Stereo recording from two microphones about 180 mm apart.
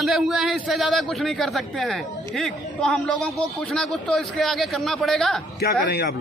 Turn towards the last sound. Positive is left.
turn(degrees=65)  # may be behind; listen again after turning